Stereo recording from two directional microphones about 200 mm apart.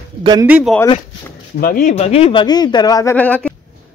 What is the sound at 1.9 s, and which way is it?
Speech, 30° left (ahead or behind).